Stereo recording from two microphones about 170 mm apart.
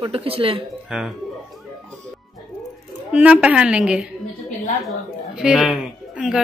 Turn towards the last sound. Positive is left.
turn(degrees=-5)  # may be behind; listen again after turning